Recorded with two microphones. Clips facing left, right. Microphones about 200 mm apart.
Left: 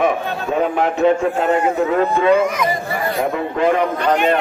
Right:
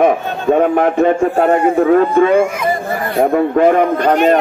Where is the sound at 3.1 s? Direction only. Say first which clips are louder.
Right 11 dB; 50° right (ahead or behind).